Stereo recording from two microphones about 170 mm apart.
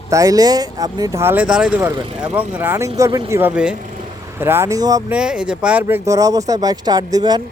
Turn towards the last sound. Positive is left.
turn(degrees=-25)  # may be behind; listen again after turning